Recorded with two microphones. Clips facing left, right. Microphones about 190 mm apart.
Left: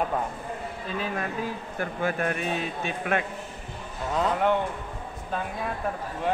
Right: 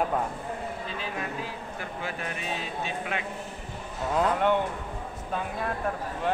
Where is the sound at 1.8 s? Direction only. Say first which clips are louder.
Left 9 dB; 50° left (ahead or behind).